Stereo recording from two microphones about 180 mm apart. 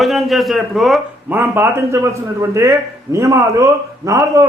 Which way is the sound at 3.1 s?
15° right (ahead or behind).